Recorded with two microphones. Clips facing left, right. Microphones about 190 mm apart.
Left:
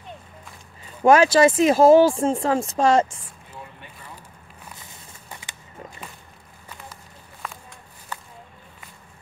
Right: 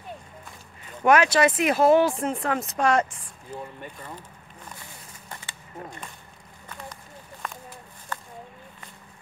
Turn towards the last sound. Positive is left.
turn(degrees=0)  # may be behind; listen again after turning